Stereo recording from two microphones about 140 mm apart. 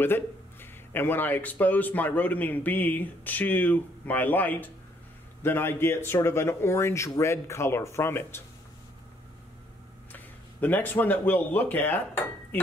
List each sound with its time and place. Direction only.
0.0 s speech: 15° left (ahead or behind)
10.1 s speech: 10° left (ahead or behind)